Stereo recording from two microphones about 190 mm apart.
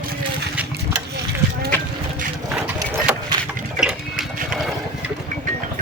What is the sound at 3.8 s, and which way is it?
Sewing machine, 5° right (ahead or behind).